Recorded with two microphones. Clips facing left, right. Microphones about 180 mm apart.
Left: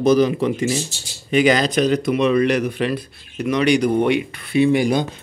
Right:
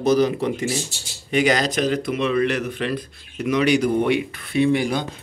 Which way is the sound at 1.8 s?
20° left (ahead or behind).